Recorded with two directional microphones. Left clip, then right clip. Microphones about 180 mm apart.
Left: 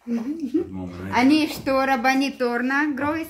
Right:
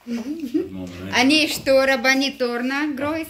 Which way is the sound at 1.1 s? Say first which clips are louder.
Right 2 dB; 65° left (ahead or behind).